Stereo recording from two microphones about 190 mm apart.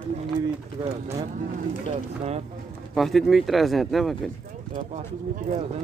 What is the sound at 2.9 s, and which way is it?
Speech, centre (ahead or behind).